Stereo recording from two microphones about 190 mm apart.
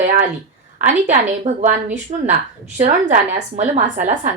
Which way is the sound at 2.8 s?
40° right (ahead or behind).